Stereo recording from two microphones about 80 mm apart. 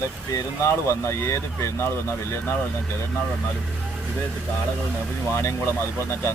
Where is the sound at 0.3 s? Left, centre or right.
Left.